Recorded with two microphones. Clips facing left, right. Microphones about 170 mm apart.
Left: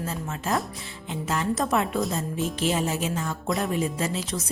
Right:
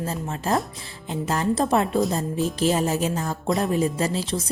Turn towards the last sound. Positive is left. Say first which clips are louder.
# right 4 dB
turn(degrees=-30)  # may be behind; listen again after turning